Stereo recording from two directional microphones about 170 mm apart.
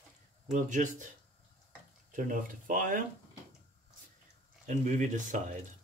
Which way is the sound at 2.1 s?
50° right (ahead or behind).